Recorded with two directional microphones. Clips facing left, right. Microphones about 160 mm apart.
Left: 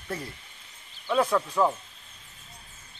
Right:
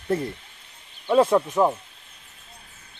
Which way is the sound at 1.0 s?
25° right (ahead or behind).